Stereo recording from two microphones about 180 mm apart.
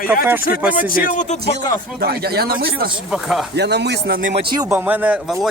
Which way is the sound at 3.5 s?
70° right (ahead or behind).